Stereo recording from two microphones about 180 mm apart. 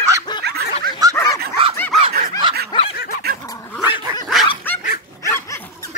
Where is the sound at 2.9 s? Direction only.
55° left (ahead or behind).